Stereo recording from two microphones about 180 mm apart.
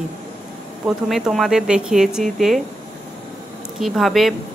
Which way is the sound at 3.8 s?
Centre (ahead or behind).